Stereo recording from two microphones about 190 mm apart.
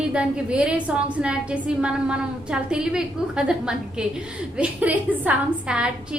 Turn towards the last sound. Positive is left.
turn(degrees=-5)  # may be behind; listen again after turning